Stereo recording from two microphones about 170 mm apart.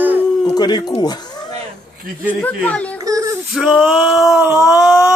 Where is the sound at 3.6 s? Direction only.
Centre (ahead or behind).